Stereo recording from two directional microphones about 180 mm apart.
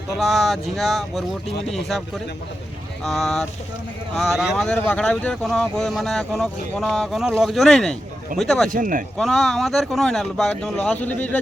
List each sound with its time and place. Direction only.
0.2 s speech: centre (ahead or behind)
8.7 s speech: 50° right (ahead or behind)
9.1 s speech: centre (ahead or behind)